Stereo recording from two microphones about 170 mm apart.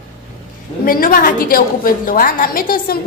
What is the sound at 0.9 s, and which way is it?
A woman's voice, 55° left (ahead or behind).